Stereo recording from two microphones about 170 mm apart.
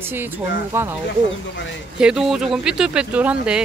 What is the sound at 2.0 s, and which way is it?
Speech, 5° right (ahead or behind).